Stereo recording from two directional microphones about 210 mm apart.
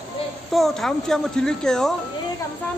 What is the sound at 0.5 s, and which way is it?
A woman's voice, centre (ahead or behind).